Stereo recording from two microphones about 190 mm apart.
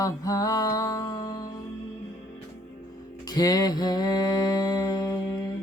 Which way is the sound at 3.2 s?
20° left (ahead or behind).